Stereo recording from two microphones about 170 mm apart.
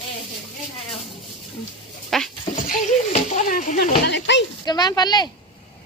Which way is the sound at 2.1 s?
Centre (ahead or behind).